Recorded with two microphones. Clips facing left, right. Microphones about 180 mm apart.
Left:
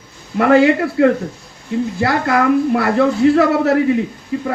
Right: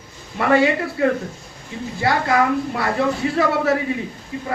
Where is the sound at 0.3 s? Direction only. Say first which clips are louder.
Left 6 dB; 65° left (ahead or behind).